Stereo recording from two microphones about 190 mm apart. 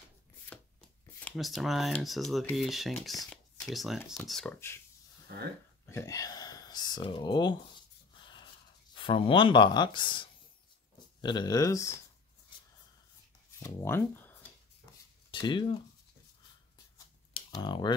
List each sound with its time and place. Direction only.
0.5 s speech: 5° left (ahead or behind)
5.9 s speech: 15° left (ahead or behind)
8.9 s speech: 25° left (ahead or behind)
13.6 s speech: 15° left (ahead or behind)
15.3 s speech: 25° left (ahead or behind)
17.5 s speech: 25° left (ahead or behind)